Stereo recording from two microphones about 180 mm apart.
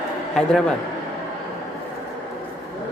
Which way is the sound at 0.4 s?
5° left (ahead or behind).